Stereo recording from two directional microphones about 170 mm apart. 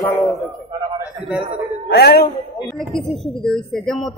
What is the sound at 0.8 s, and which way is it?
Speech, 25° right (ahead or behind).